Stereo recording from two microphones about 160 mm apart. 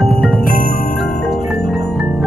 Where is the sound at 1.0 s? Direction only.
75° left (ahead or behind).